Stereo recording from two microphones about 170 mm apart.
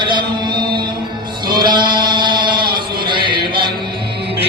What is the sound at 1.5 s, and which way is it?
Chant, 25° right (ahead or behind).